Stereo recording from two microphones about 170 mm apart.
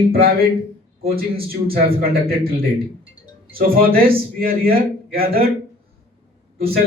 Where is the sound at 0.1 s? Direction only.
60° right (ahead or behind).